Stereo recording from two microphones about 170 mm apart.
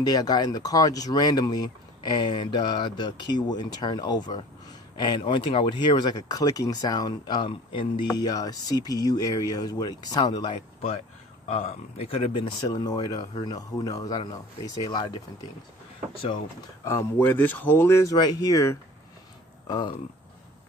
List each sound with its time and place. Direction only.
0.0 s speech: 25° left (ahead or behind)
8.1 s speech: 20° left (ahead or behind)
10.5 s speech: 35° left (ahead or behind)
16.8 s speech: 15° left (ahead or behind)